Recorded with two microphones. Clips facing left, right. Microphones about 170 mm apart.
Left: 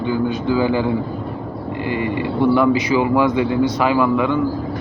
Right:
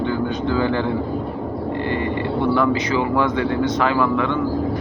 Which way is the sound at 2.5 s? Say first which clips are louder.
Left 4 dB; 10° left (ahead or behind).